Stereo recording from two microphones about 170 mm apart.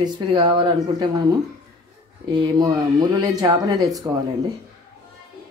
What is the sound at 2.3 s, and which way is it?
Speech, 20° right (ahead or behind).